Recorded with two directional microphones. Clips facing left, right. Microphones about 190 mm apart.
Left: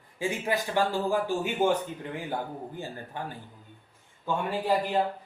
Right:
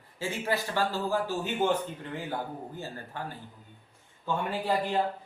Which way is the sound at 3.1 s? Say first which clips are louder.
Left 2 dB; 15° left (ahead or behind).